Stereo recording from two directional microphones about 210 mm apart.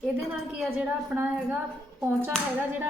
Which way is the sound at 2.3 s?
5° left (ahead or behind).